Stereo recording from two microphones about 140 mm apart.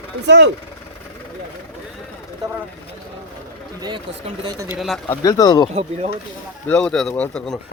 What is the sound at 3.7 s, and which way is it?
Speech, 30° right (ahead or behind).